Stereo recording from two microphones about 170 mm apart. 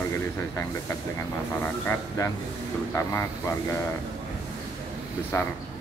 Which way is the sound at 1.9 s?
15° left (ahead or behind).